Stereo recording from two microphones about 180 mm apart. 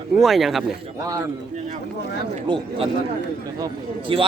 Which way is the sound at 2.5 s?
30° right (ahead or behind).